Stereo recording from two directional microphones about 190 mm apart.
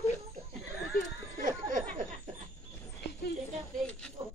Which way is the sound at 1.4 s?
45° right (ahead or behind).